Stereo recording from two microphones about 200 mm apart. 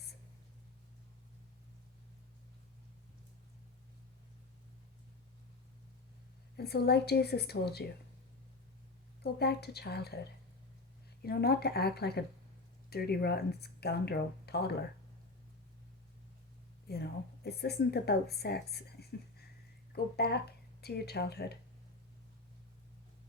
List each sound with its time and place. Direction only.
6.6 s speech: 55° left (ahead or behind)
9.2 s speech: 55° left (ahead or behind)
11.2 s speech: 50° left (ahead or behind)
16.9 s speech: 55° left (ahead or behind)